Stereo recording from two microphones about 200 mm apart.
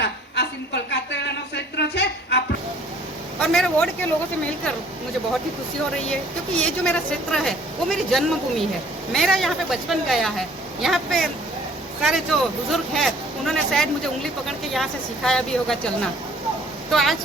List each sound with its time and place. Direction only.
0.0 s a sound: 60° left (ahead or behind)
3.4 s speech: centre (ahead or behind)
6.6 s speech: 5° left (ahead or behind)
16.9 s speech: centre (ahead or behind)